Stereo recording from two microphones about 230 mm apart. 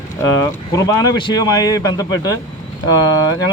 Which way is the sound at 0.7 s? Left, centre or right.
Centre.